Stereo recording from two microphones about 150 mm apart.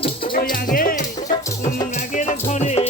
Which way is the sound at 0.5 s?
70° left (ahead or behind).